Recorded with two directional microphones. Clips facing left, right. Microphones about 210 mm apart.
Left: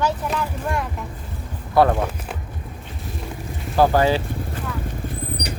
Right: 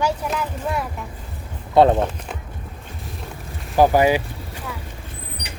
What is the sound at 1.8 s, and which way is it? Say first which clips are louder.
Speech: right 3 dB; 20° right (ahead or behind).